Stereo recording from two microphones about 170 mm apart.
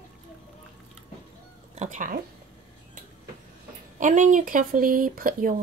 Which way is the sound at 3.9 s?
50° right (ahead or behind).